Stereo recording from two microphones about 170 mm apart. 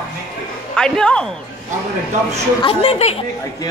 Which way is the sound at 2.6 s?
35° left (ahead or behind).